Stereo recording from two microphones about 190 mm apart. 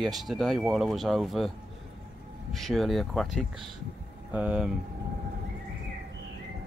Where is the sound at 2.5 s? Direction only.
Centre (ahead or behind).